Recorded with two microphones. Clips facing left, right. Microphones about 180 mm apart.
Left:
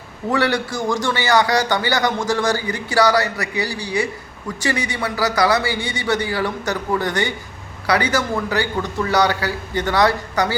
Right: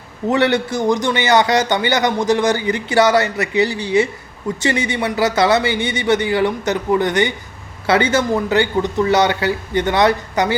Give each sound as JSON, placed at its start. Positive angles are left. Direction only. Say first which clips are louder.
{"t": 0.3, "sound": "a man's voice", "louder": "right 4 dB", "side_deg": -20}